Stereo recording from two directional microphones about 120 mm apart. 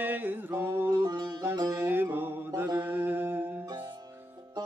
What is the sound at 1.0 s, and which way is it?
Music, 35° right (ahead or behind).